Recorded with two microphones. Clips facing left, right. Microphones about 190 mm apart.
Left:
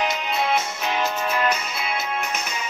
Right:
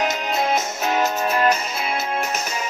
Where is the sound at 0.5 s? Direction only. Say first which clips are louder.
Right 2 dB; 45° right (ahead or behind).